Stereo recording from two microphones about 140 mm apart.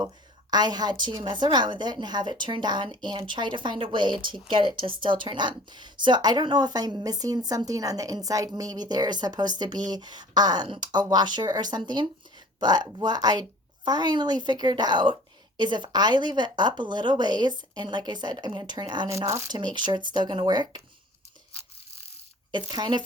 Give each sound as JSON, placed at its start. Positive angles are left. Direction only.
{"t": 0.5, "sound": "a woman's voice", "side_deg": -30}
{"t": 19.1, "sound": "speech", "side_deg": -20}
{"t": 19.5, "sound": "a woman's voice", "side_deg": -35}
{"t": 22.6, "sound": "a woman's voice", "side_deg": -30}